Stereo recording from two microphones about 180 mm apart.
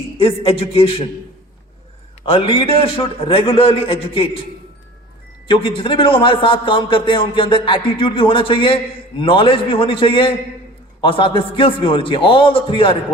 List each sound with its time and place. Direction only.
0.2 s a man's voice: 30° left (ahead or behind)
2.2 s a man's voice: 30° left (ahead or behind)
5.5 s a man's voice: 30° left (ahead or behind)